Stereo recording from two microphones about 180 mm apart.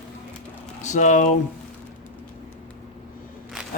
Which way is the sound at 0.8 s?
45° left (ahead or behind).